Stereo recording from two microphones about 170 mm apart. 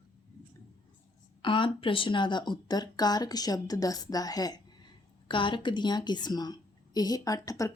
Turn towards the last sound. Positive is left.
turn(degrees=20)  # may be behind; listen again after turning